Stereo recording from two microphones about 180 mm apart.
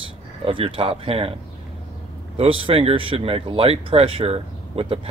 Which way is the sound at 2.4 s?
30° right (ahead or behind).